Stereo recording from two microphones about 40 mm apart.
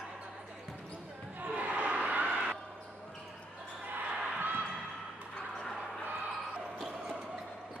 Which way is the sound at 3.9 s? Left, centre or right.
Right.